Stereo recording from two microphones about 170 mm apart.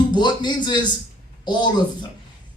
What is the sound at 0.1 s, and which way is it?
A man's voice, 25° left (ahead or behind).